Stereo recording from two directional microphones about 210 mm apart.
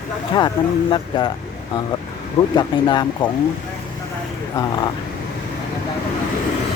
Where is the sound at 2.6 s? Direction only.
20° left (ahead or behind).